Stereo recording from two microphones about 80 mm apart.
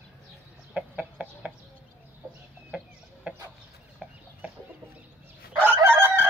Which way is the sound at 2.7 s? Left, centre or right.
Centre.